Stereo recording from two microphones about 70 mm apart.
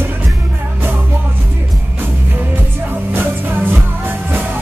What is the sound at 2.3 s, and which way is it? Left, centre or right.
Music, right.